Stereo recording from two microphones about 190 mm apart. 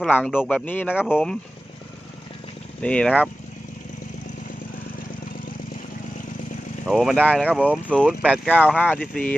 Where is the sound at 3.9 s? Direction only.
40° left (ahead or behind).